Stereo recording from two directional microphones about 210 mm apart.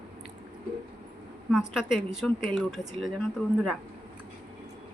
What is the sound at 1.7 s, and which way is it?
Speech, centre (ahead or behind).